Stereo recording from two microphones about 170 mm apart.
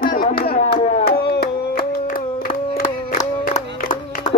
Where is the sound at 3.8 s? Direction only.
50° left (ahead or behind).